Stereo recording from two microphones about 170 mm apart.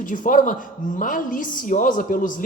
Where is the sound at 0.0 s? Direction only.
50° left (ahead or behind).